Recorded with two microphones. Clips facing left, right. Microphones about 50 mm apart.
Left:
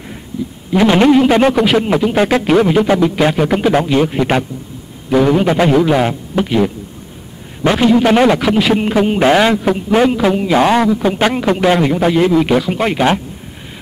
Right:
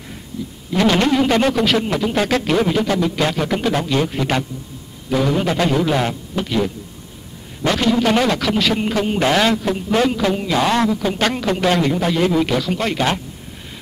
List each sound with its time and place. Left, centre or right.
0.7 s a man's voice: centre